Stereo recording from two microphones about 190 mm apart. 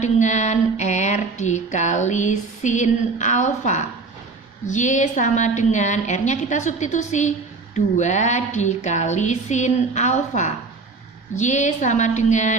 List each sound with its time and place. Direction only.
0.0 s speech: 40° left (ahead or behind)